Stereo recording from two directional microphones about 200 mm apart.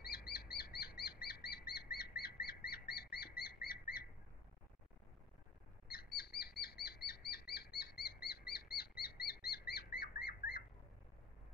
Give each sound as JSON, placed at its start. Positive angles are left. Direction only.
{"t": 0.0, "sound": "bird vocalization", "side_deg": 50}
{"t": 5.9, "sound": "bird vocalization", "side_deg": 50}